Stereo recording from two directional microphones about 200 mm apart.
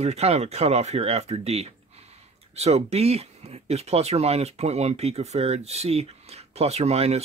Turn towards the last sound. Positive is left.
turn(degrees=-30)  # may be behind; listen again after turning